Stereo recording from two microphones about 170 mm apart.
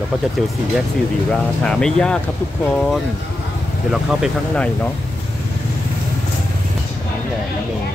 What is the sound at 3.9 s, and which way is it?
Speech, centre (ahead or behind).